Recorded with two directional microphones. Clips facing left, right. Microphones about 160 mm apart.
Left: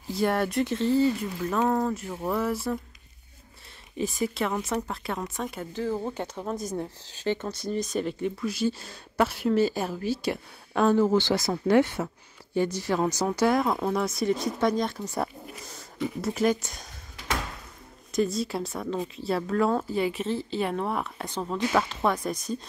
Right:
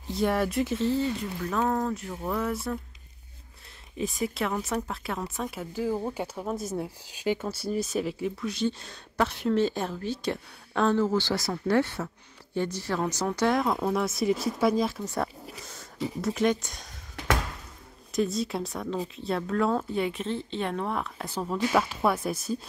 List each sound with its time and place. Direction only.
0.1 s speech: centre (ahead or behind)
3.9 s speech: centre (ahead or behind)
15.4 s a sound: 35° right (ahead or behind)
16.2 s speech: 5° left (ahead or behind)
18.1 s speech: centre (ahead or behind)